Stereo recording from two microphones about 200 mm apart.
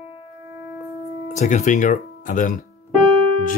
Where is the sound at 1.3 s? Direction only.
35° left (ahead or behind).